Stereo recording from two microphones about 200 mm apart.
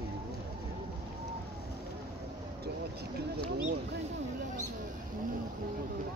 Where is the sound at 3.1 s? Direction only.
55° right (ahead or behind).